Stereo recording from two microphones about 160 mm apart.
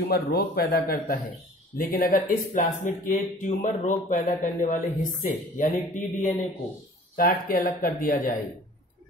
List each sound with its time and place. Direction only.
0.1 s a man's voice: 75° left (ahead or behind); by 3.5 s 45° left (ahead or behind)
3.6 s a man's voice: 60° left (ahead or behind)